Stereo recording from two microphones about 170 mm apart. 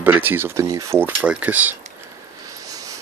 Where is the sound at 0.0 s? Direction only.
10° right (ahead or behind).